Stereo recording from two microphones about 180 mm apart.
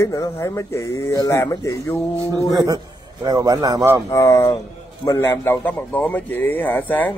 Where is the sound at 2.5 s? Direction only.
20° right (ahead or behind).